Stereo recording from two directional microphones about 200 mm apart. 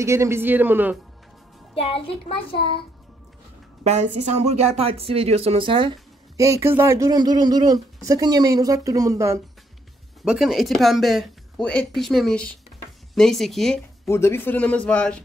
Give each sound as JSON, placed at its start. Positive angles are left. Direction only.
{"t": 0.0, "sound": "speech", "side_deg": -15}
{"t": 1.8, "sound": "a child's voice", "side_deg": 30}
{"t": 3.8, "sound": "speech", "side_deg": -35}
{"t": 10.2, "sound": "speech", "side_deg": 0}
{"t": 14.0, "sound": "a man's voice", "side_deg": 15}